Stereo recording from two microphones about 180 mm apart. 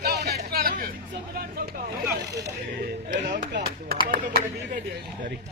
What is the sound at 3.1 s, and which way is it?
Chop, 75° right (ahead or behind).